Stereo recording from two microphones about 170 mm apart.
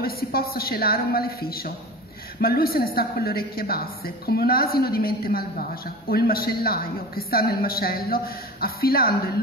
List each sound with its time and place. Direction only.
0.0 s a woman's voice: 60° left (ahead or behind)